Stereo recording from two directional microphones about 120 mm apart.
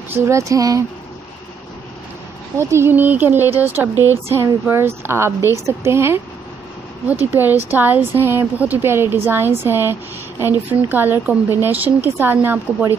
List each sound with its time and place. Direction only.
0.2 s speech: 25° right (ahead or behind)
2.5 s a woman's voice: 20° right (ahead or behind)
7.7 s a woman's voice: 15° right (ahead or behind)